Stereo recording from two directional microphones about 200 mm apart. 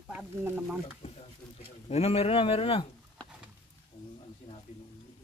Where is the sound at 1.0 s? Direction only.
30° left (ahead or behind).